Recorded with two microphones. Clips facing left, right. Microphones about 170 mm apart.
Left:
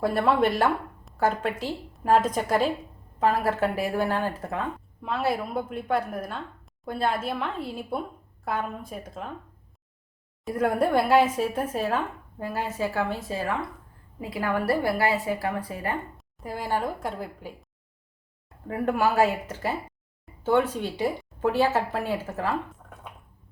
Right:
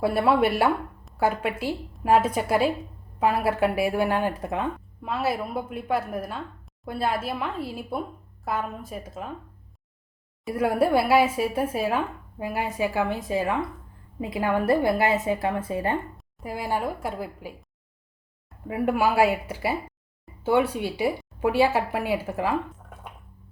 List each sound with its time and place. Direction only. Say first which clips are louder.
0.0 s speech: right 1 dB; 10° right (ahead or behind)
5.0 s a woman's voice: even; 5° right (ahead or behind)
10.4 s a woman's voice: right 1 dB; 5° right (ahead or behind); by 16.0 s 25° right (ahead or behind)
16.1 s speech: right 1 dB; 10° right (ahead or behind)
18.7 s speech: right 1 dB; 10° right (ahead or behind)